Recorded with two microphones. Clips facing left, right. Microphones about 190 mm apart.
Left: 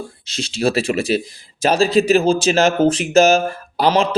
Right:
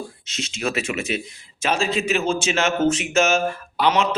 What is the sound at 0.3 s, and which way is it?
A man's voice, 35° left (ahead or behind).